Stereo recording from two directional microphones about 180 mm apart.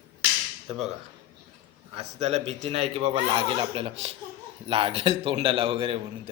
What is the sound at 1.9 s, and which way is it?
A man's voice, 35° right (ahead or behind).